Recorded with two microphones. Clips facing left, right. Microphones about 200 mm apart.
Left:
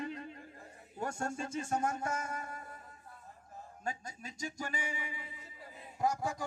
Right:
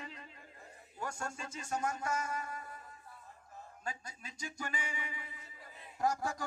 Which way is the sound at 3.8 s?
45° left (ahead or behind).